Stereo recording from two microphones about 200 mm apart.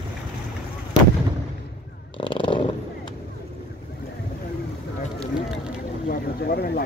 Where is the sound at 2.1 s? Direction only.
25° left (ahead or behind).